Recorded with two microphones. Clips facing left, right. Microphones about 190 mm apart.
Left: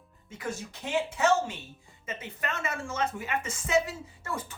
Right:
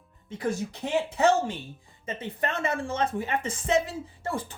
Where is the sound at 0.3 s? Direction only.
35° right (ahead or behind).